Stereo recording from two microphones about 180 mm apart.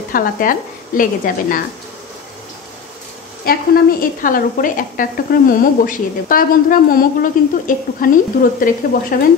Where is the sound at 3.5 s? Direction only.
55° left (ahead or behind).